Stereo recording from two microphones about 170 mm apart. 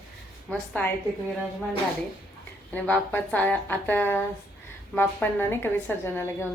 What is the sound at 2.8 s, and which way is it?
A woman's voice, 10° left (ahead or behind).